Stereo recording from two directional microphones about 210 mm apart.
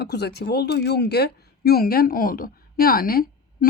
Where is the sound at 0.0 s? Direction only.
50° left (ahead or behind).